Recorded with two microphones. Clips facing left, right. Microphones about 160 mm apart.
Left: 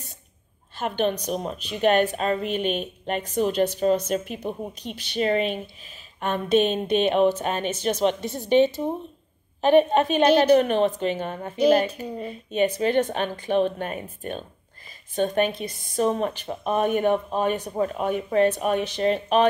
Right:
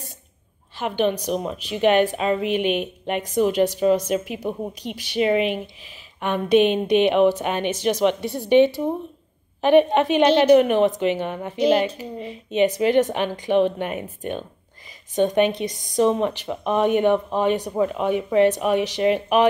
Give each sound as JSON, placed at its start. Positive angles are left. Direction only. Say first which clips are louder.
{"t": 0.8, "sound": "speech", "louder": "right 3 dB", "side_deg": -15}
{"t": 15.1, "sound": "speech", "louder": "right 4 dB", "side_deg": -15}